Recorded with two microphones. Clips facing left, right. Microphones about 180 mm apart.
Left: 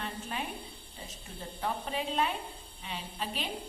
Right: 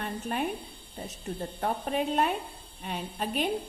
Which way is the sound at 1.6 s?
50° right (ahead or behind).